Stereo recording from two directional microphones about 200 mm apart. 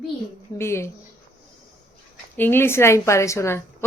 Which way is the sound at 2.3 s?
10° left (ahead or behind).